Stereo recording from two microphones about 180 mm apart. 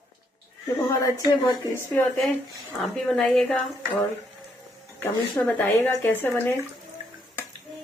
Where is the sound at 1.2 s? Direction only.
20° left (ahead or behind).